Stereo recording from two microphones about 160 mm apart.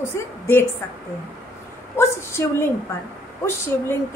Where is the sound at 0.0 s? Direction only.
15° left (ahead or behind).